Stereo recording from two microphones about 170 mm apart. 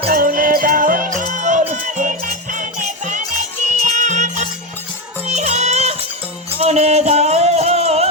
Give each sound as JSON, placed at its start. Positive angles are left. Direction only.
{"t": 0.1, "sound": "music", "side_deg": -55}